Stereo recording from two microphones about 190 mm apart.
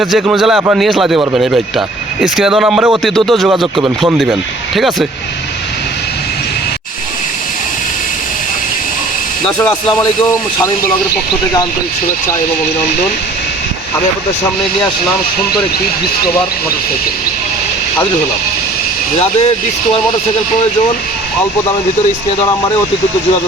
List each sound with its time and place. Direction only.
0.0 s speech: 5° right (ahead or behind)
9.5 s speech: 5° left (ahead or behind)